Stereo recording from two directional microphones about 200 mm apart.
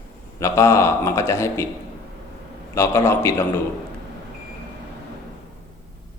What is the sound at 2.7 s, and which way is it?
Speech, 15° left (ahead or behind).